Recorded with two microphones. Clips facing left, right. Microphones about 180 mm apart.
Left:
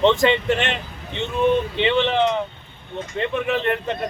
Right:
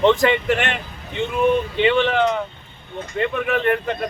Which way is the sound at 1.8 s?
25° left (ahead or behind).